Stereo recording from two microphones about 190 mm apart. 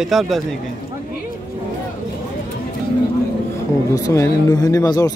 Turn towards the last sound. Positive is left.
turn(degrees=20)  # may be behind; listen again after turning